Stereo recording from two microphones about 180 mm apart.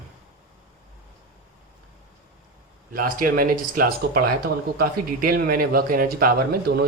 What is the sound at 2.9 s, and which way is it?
Speech, 55° right (ahead or behind).